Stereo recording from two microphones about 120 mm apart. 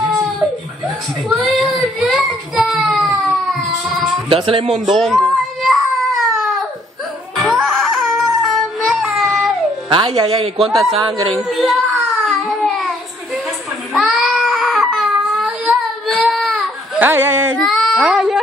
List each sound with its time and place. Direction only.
1.3 s child singing: centre (ahead or behind)
4.3 s speech: 50° right (ahead or behind)
4.9 s baby cry: centre (ahead or behind)
9.8 s speech: 50° right (ahead or behind)
10.7 s a man's voice: centre (ahead or behind)
11.4 s a sound: centre (ahead or behind)
13.9 s baby cry: centre (ahead or behind)
17.0 s a sound: 15° right (ahead or behind)
17.6 s baby cry: centre (ahead or behind)